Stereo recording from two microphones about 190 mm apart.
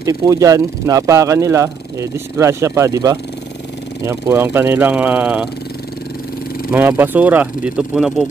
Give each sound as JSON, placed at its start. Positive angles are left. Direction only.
{"t": 0.0, "sound": "speech", "side_deg": -20}
{"t": 6.7, "sound": "speech", "side_deg": -10}